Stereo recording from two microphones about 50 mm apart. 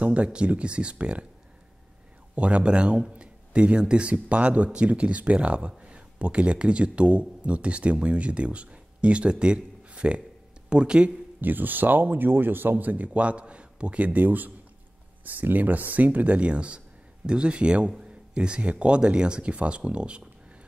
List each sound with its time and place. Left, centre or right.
0.0 s speech: right
2.3 s speech: right
11.4 s speech: right